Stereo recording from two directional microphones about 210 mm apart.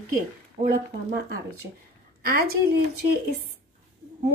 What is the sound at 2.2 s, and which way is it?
Speech, 45° right (ahead or behind).